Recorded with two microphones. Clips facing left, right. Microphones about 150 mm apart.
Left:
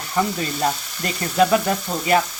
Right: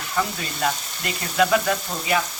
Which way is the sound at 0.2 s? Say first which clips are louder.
Left 4 dB; 25° left (ahead or behind).